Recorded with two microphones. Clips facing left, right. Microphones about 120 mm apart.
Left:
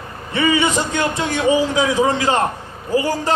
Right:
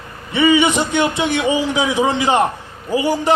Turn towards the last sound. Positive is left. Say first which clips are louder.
# right 1 dB
turn(degrees=-20)  # may be behind; listen again after turning